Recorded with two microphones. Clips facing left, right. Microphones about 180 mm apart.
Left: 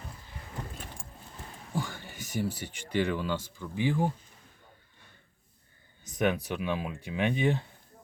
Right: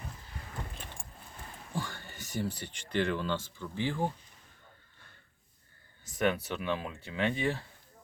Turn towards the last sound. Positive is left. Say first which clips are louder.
# left 3 dB
turn(degrees=20)  # may be behind; listen again after turning